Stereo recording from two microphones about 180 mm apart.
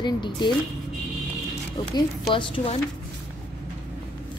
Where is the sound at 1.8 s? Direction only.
30° left (ahead or behind).